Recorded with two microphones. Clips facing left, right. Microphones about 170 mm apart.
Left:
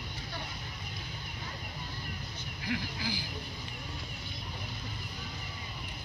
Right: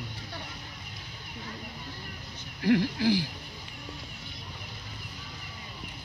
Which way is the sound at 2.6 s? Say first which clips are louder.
Right 12 dB; 70° right (ahead or behind).